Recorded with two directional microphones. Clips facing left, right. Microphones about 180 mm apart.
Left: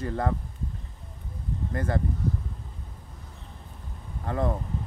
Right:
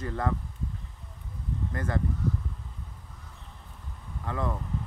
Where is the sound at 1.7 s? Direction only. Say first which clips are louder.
Left 3 dB; 30° left (ahead or behind).